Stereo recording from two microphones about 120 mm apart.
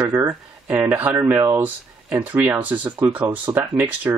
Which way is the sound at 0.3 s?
15° right (ahead or behind).